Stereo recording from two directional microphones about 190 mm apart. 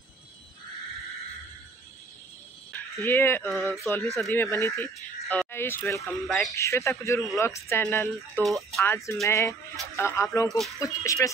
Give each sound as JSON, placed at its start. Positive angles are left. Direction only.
{"t": 2.7, "sound": "speech", "side_deg": 10}
{"t": 6.1, "sound": "speech", "side_deg": 0}
{"t": 6.5, "sound": "speech", "side_deg": 15}
{"t": 8.4, "sound": "speech", "side_deg": 0}
{"t": 8.8, "sound": "speech", "side_deg": 15}